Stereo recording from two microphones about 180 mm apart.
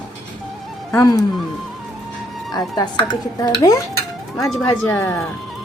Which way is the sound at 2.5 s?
25° left (ahead or behind).